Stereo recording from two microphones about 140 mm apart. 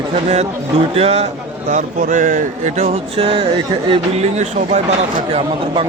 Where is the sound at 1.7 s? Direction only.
65° right (ahead or behind); by 3.4 s 40° right (ahead or behind).